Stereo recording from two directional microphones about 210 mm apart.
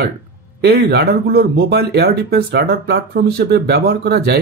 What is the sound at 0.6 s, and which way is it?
Speech, 50° right (ahead or behind).